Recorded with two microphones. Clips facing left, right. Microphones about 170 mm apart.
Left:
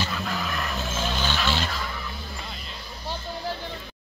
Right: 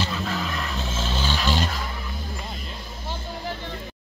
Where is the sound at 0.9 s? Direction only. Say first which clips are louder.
Even; 30° right (ahead or behind).